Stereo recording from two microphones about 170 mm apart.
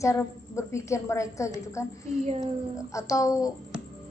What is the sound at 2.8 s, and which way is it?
Speech, 20° left (ahead or behind).